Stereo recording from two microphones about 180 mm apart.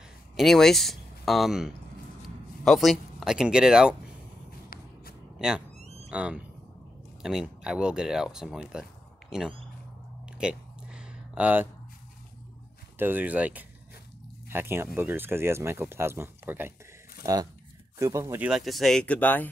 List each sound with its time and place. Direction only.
0.4 s speech: centre (ahead or behind)
5.4 s speech: centre (ahead or behind)
5.8 s a sound: 35° right (ahead or behind)
6.0 s speech: 5° right (ahead or behind)
10.4 s a sound: 5° right (ahead or behind)
12.9 s speech: 10° right (ahead or behind)
17.9 s speech: 15° right (ahead or behind)
18.5 s speech: centre (ahead or behind)